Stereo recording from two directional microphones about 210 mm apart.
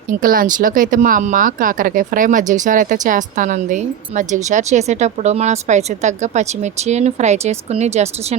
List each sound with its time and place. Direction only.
0.1 s speech: 40° right (ahead or behind)